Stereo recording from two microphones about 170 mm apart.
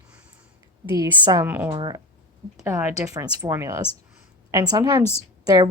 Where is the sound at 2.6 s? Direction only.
15° right (ahead or behind).